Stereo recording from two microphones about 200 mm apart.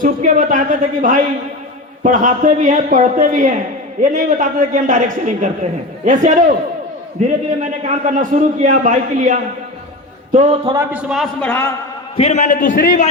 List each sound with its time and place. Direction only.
0.0 s a man's voice: 40° right (ahead or behind)
10.9 s a man's voice: centre (ahead or behind)
11.4 s a man's voice: 10° left (ahead or behind)
12.1 s a man's voice: 35° left (ahead or behind)